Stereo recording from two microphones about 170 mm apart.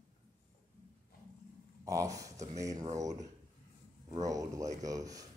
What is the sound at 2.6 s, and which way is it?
Speech, 20° right (ahead or behind).